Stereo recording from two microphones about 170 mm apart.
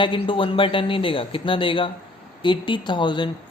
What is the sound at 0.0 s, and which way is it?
Speech, 30° left (ahead or behind).